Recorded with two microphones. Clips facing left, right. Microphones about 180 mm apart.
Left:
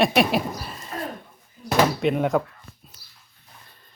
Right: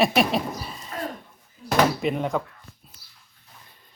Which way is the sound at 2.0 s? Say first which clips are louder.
Left 4 dB; centre (ahead or behind).